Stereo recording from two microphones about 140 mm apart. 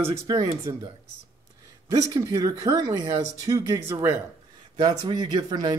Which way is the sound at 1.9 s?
20° right (ahead or behind).